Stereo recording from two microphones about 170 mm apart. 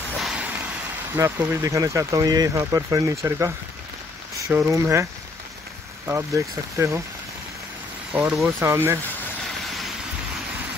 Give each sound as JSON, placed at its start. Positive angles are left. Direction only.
{"t": 0.2, "sound": "vehicle", "side_deg": -5}
{"t": 1.1, "sound": "speech", "side_deg": -15}
{"t": 4.6, "sound": "speech", "side_deg": -15}
{"t": 6.0, "sound": "speech", "side_deg": -15}
{"t": 8.1, "sound": "speech", "side_deg": -10}